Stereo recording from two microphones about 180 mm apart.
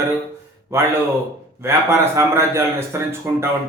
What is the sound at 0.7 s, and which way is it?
Speech, 15° right (ahead or behind).